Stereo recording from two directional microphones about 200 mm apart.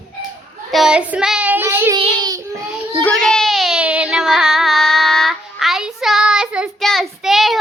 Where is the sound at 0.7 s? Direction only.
5° right (ahead or behind); by 2.4 s 20° right (ahead or behind).